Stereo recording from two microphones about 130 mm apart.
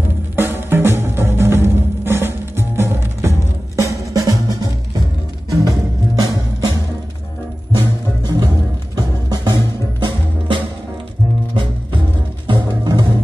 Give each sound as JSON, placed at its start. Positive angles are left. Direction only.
{"t": 0.4, "sound": "music", "side_deg": -15}
{"t": 7.7, "sound": "music", "side_deg": -35}
{"t": 12.4, "sound": "music", "side_deg": -35}